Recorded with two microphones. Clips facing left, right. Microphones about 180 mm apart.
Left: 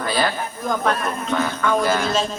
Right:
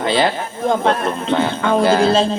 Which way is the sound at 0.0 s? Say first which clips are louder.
Right 5 dB; 25° right (ahead or behind).